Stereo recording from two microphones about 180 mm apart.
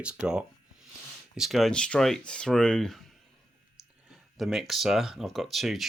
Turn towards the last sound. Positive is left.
turn(degrees=0)  # may be behind; listen again after turning